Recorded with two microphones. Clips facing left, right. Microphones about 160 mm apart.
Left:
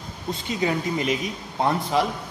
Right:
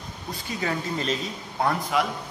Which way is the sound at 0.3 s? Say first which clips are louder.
Left 5 dB; 20° left (ahead or behind).